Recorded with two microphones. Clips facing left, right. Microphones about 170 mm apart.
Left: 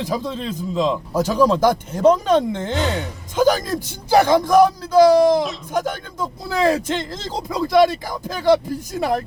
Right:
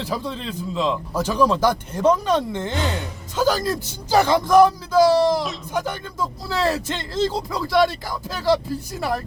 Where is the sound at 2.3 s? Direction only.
55° left (ahead or behind).